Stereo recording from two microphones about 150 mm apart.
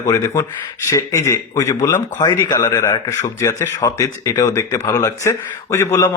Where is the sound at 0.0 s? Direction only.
25° left (ahead or behind).